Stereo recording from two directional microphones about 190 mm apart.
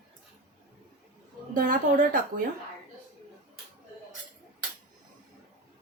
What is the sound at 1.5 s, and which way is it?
Speech, 45° right (ahead or behind).